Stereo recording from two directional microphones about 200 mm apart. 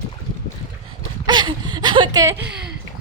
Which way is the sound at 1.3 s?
20° right (ahead or behind).